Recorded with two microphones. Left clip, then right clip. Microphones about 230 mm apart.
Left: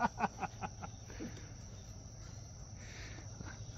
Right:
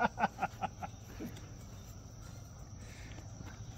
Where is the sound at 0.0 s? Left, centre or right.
Right.